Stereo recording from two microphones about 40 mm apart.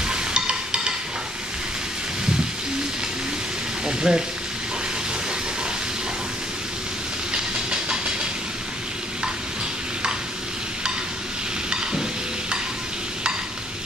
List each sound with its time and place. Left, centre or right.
0.0 s music: right
3.8 s speech: right